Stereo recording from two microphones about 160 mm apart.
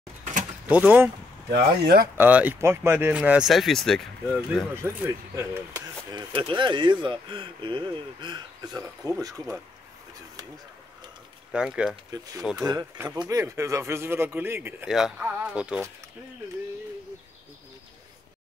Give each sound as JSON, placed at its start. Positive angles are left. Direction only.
{"t": 0.7, "sound": "speech", "side_deg": -10}
{"t": 1.5, "sound": "speech", "side_deg": -90}
{"t": 2.1, "sound": "speech", "side_deg": -10}
{"t": 4.8, "sound": "speech", "side_deg": -15}
{"t": 6.1, "sound": "speech", "side_deg": -30}
{"t": 11.5, "sound": "speech", "side_deg": -5}
{"t": 12.5, "sound": "speech", "side_deg": -25}
{"t": 12.9, "sound": "speech", "side_deg": -10}
{"t": 14.9, "sound": "speech", "side_deg": 0}